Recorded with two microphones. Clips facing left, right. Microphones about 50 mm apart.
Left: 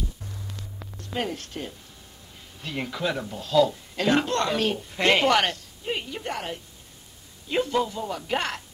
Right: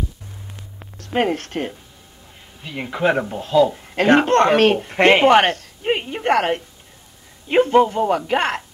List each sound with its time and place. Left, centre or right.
1.1 s speech: right
2.6 s speech: centre
2.9 s speech: right
3.8 s speech: right
5.0 s speech: right
5.6 s a sound: right
5.9 s a sound: right
6.2 s a woman's voice: right
7.4 s speech: right